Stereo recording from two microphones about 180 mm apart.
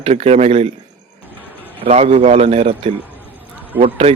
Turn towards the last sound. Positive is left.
turn(degrees=-35)  # may be behind; listen again after turning